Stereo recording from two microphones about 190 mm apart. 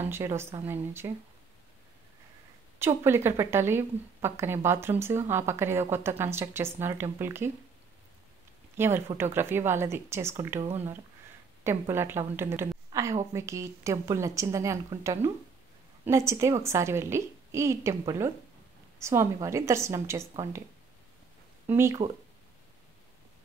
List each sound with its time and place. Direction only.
0.0 s a woman's voice: 15° right (ahead or behind)
2.8 s a woman's voice: 15° right (ahead or behind)
8.7 s a woman's voice: 10° right (ahead or behind)
11.6 s a woman's voice: 15° right (ahead or behind)
21.6 s a woman's voice: 15° right (ahead or behind)